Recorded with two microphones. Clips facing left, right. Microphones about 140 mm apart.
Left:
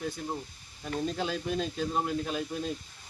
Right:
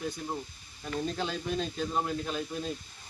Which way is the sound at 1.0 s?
5° left (ahead or behind).